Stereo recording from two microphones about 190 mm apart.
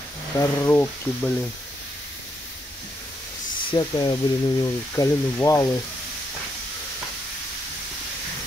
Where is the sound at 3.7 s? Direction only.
20° left (ahead or behind).